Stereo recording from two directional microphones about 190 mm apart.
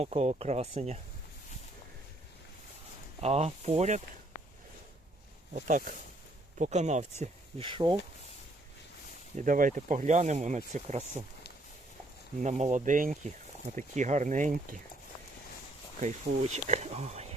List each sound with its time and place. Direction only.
0.0 s speech: 35° right (ahead or behind)
3.2 s speech: 35° right (ahead or behind)
5.5 s speech: 45° right (ahead or behind)
7.7 s speech: 25° right (ahead or behind)
9.3 s speech: 45° right (ahead or behind)
12.4 s speech: 35° right (ahead or behind)
16.0 s speech: 35° right (ahead or behind)